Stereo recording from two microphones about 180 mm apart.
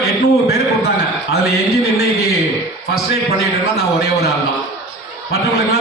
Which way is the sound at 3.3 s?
60° left (ahead or behind).